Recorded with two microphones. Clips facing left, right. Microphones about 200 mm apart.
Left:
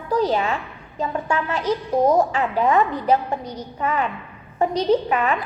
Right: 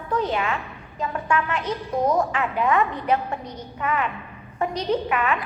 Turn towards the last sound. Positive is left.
turn(degrees=35)  # may be behind; listen again after turning